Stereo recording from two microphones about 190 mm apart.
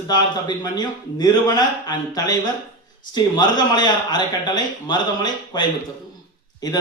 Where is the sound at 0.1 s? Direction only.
20° left (ahead or behind).